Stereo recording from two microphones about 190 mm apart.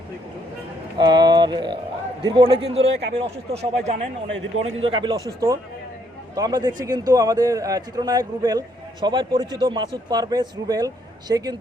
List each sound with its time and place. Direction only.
0.9 s a sound: 20° right (ahead or behind)
2.2 s a man's voice: 20° right (ahead or behind)
2.6 s a man's voice: 30° right (ahead or behind)